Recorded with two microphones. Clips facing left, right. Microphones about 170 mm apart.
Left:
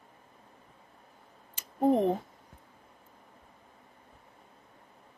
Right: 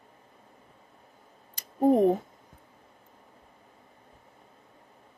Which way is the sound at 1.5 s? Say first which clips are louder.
Right 3 dB; 40° right (ahead or behind).